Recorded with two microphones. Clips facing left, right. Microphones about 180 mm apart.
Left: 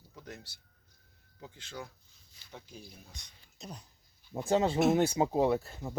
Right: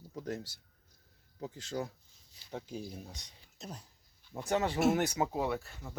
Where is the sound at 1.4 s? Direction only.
40° right (ahead or behind).